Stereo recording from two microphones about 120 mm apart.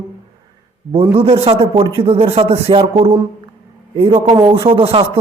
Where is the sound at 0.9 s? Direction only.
50° right (ahead or behind).